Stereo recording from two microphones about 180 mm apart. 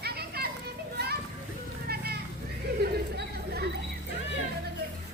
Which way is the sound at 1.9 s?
60° right (ahead or behind).